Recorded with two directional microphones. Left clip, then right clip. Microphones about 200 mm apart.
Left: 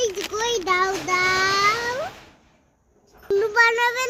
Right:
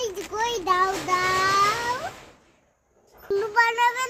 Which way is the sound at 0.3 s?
5° right (ahead or behind).